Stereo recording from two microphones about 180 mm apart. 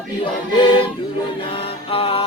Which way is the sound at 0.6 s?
30° left (ahead or behind).